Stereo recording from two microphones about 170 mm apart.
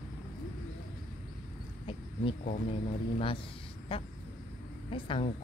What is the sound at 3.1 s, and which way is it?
Speech, 30° left (ahead or behind).